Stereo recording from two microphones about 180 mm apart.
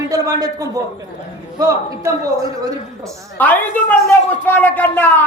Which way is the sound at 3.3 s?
10° left (ahead or behind).